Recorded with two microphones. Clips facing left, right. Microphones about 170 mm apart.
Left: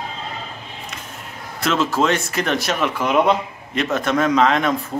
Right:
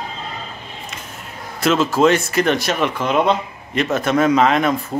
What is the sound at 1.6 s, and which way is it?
Speech, centre (ahead or behind).